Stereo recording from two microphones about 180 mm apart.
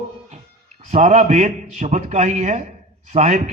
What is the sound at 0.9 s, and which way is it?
A man's voice, 35° right (ahead or behind).